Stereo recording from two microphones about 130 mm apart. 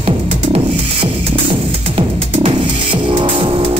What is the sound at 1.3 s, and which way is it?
Music, 45° right (ahead or behind).